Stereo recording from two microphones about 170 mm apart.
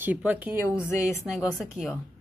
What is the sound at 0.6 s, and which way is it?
Speech, 15° left (ahead or behind).